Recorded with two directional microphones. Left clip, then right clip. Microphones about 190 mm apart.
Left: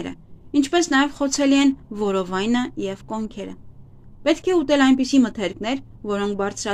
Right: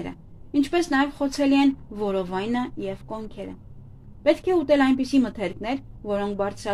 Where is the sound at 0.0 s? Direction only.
25° left (ahead or behind).